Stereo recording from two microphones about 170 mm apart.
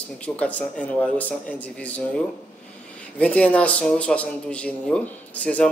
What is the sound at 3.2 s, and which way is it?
Speech, 5° left (ahead or behind).